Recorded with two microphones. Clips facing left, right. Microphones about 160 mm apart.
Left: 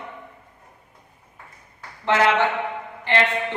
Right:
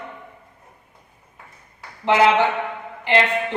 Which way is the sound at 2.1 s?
15° right (ahead or behind).